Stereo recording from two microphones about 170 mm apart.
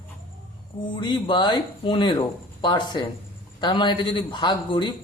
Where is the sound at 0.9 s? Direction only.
25° left (ahead or behind).